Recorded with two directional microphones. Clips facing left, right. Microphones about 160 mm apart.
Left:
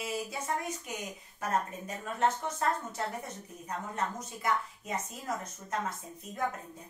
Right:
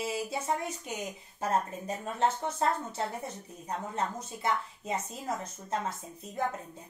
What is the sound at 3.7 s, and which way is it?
A woman's voice, 30° right (ahead or behind).